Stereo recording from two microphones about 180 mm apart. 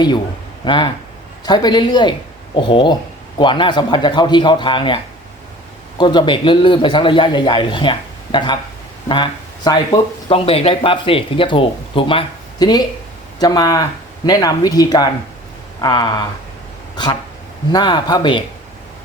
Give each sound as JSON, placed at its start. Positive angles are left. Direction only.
{"t": 0.6, "sound": "speech", "side_deg": 25}
{"t": 6.0, "sound": "speech", "side_deg": 25}
{"t": 17.7, "sound": "speech", "side_deg": 25}